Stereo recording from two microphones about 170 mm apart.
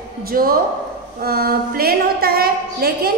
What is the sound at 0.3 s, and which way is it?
A woman's voice, 60° right (ahead or behind).